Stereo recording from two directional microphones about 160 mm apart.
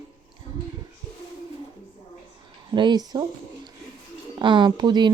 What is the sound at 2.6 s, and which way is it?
Speech, 30° right (ahead or behind).